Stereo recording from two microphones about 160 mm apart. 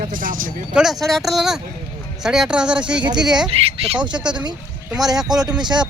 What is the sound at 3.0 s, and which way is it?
Speech, 25° right (ahead or behind).